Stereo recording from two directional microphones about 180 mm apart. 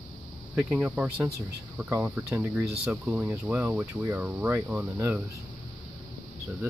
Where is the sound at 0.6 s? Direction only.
5° right (ahead or behind).